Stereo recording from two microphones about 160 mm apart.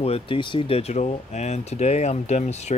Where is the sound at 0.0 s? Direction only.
35° left (ahead or behind).